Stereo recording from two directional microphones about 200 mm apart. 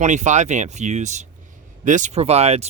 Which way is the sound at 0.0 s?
35° right (ahead or behind).